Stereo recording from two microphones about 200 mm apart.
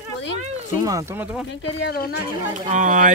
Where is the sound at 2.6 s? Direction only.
40° right (ahead or behind).